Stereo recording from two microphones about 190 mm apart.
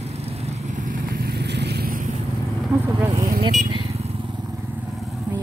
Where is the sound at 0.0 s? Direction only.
35° right (ahead or behind); by 2.0 s 50° right (ahead or behind).